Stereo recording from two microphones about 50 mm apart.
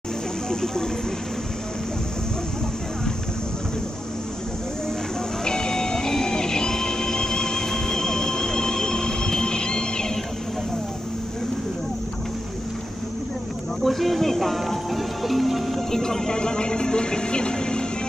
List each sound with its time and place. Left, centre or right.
0.5 s speech: centre
5.4 s music: centre
13.8 s music: centre
16.0 s music: centre